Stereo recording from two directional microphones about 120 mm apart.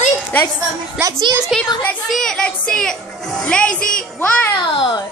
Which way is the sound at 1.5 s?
Centre (ahead or behind).